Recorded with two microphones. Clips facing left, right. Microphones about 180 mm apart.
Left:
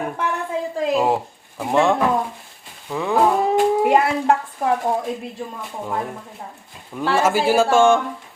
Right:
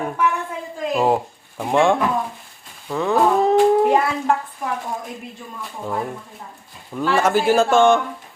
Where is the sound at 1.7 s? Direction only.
Centre (ahead or behind).